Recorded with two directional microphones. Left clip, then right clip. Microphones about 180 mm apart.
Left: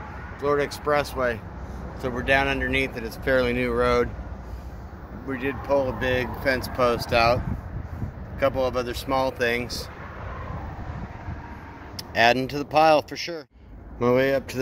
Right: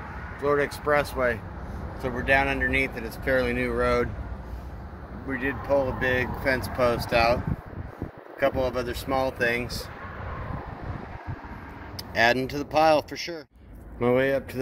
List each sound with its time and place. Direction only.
0.4 s speech: centre (ahead or behind)
2.0 s speech: 15° left (ahead or behind)
5.3 s speech: 15° left (ahead or behind)
8.4 s speech: 10° left (ahead or behind)
12.0 s speech: 15° left (ahead or behind)
13.9 s speech: 5° left (ahead or behind)